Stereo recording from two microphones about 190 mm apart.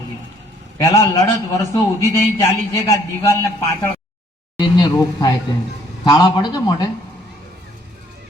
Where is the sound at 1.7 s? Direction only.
15° left (ahead or behind).